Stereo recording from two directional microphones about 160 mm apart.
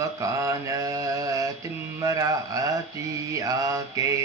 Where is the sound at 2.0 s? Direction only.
20° right (ahead or behind).